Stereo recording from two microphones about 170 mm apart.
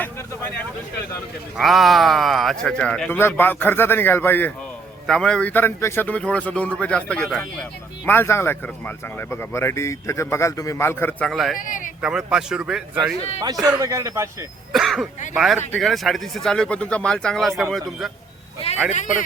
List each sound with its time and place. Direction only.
1.5 s a man's voice: centre (ahead or behind)
11.3 s speech: centre (ahead or behind)
11.5 s speech: 50° left (ahead or behind)
12.0 s speech: 5° right (ahead or behind)
13.4 s a man's voice: 25° right (ahead or behind)
14.7 s speech: centre (ahead or behind)
18.9 s speech: 45° left (ahead or behind)